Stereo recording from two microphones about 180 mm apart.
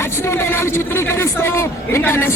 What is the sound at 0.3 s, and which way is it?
A man's voice, 15° left (ahead or behind).